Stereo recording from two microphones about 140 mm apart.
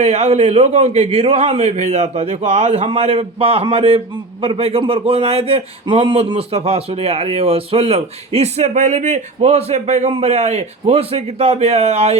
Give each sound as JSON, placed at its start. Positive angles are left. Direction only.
{"t": 0.0, "sound": "a man's voice", "side_deg": -50}